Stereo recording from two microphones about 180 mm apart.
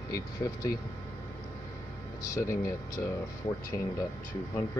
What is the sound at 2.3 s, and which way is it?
Speech, 15° left (ahead or behind).